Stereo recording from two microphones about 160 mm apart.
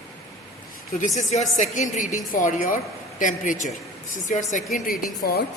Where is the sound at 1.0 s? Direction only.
45° left (ahead or behind).